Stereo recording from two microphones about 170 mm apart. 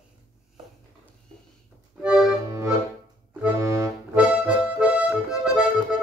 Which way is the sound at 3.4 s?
15° right (ahead or behind).